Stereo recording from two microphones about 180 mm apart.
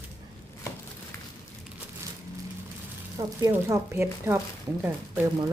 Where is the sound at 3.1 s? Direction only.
15° right (ahead or behind).